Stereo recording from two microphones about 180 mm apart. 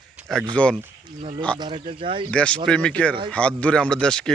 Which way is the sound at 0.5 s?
5° left (ahead or behind).